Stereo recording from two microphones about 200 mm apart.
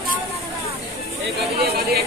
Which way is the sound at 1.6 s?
50° right (ahead or behind).